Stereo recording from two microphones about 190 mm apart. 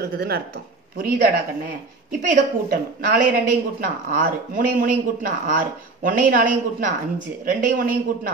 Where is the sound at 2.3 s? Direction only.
45° right (ahead or behind).